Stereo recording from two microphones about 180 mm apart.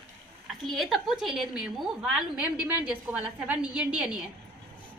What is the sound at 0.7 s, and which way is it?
A woman's voice, centre (ahead or behind).